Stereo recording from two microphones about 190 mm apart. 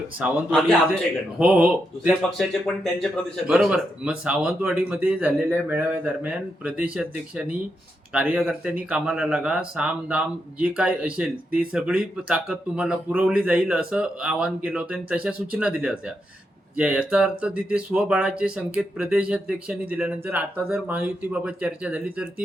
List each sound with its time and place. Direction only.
0.2 s speech: 5° right (ahead or behind)
1.4 s speech: 5° right (ahead or behind)